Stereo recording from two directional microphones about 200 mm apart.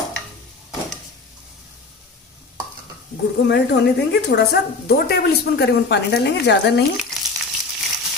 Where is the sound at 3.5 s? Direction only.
55° left (ahead or behind).